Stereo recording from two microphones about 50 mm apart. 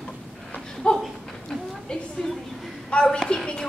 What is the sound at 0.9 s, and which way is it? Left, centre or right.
Speech, centre.